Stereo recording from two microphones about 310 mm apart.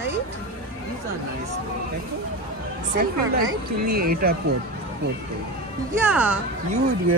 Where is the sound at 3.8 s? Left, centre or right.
Right.